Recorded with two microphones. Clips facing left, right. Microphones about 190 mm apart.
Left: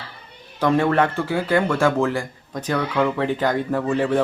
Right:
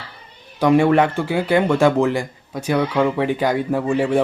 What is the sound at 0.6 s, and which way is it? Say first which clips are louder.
Speech: right 4 dB; 15° right (ahead or behind).